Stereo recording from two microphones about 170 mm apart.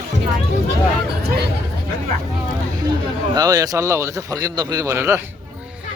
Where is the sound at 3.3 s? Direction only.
20° right (ahead or behind).